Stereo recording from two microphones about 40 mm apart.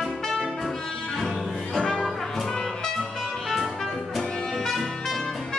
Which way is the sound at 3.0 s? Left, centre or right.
Centre.